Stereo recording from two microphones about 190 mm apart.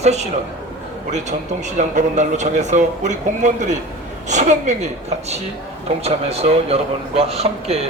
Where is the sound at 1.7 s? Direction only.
40° right (ahead or behind).